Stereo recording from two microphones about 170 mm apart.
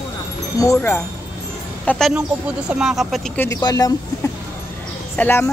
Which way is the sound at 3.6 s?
20° left (ahead or behind).